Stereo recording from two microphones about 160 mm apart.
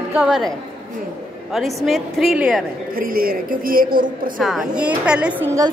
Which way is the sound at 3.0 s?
65° right (ahead or behind).